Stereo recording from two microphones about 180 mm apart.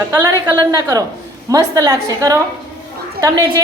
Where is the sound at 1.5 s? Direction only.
20° right (ahead or behind).